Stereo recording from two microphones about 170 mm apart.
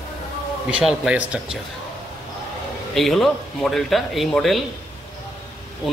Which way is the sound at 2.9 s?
Centre (ahead or behind).